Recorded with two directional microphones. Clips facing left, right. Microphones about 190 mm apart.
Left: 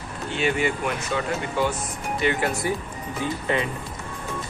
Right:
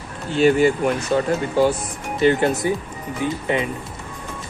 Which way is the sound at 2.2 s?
25° right (ahead or behind).